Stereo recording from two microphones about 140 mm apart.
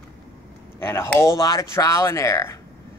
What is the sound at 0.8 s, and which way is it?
Speech, 15° left (ahead or behind).